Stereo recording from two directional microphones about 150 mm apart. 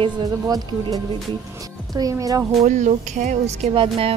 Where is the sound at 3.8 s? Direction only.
40° right (ahead or behind).